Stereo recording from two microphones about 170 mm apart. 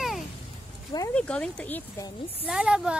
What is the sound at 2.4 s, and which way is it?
Speech, 5° right (ahead or behind).